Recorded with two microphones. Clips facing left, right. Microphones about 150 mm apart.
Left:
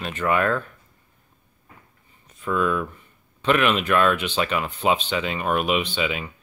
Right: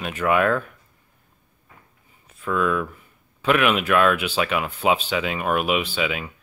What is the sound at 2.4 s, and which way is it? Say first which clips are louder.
Speech: even; centre (ahead or behind).